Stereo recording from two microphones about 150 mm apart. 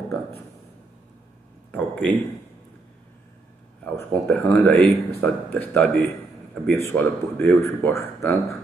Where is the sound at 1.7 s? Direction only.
10° left (ahead or behind).